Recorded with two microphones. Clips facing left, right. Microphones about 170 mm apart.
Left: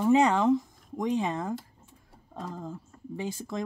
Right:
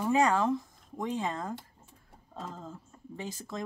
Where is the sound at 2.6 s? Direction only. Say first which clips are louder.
Left 5 dB; 15° left (ahead or behind).